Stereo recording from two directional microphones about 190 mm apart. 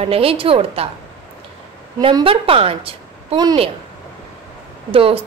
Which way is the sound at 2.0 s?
25° right (ahead or behind).